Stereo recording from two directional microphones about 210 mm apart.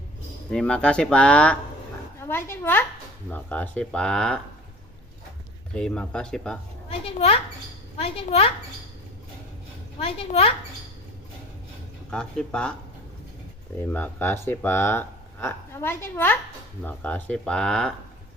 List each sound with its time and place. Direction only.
0.5 s a woman's voice: 5° left (ahead or behind)
5.8 s speech: 5° left (ahead or behind)
6.9 s a woman's voice: 30° left (ahead or behind)
9.9 s a woman's voice: 30° left (ahead or behind)
12.1 s speech: 5° left (ahead or behind)
13.9 s speech: 10° left (ahead or behind)